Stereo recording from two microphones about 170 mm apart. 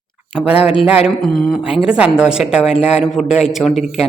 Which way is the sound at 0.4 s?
10° right (ahead or behind).